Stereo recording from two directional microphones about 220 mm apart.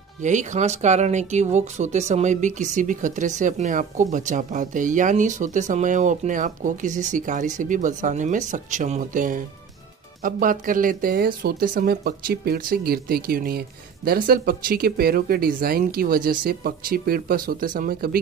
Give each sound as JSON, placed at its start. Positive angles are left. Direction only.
{"t": 0.2, "sound": "speech", "side_deg": -35}